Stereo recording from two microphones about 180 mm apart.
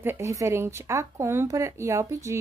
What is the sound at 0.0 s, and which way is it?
Speech, 15° right (ahead or behind).